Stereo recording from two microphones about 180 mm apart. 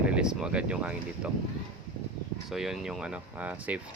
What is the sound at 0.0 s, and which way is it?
Speech, 5° right (ahead or behind).